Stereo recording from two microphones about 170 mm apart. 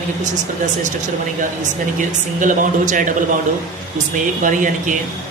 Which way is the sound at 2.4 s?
50° right (ahead or behind).